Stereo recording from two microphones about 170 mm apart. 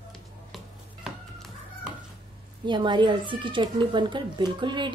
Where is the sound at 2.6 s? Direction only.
30° right (ahead or behind).